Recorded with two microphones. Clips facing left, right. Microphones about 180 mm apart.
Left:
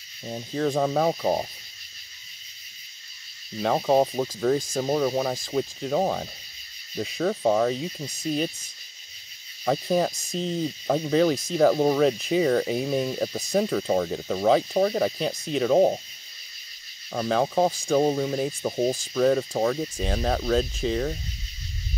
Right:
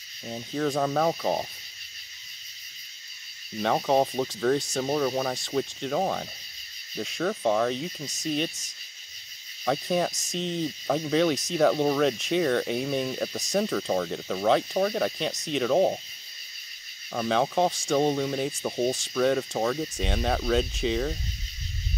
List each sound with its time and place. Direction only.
0.2 s speech: 10° left (ahead or behind)
3.5 s speech: 5° left (ahead or behind)
9.7 s speech: 5° left (ahead or behind)
17.1 s speech: 5° left (ahead or behind)